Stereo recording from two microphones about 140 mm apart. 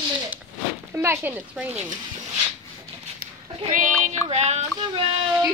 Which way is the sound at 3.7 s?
65° right (ahead or behind).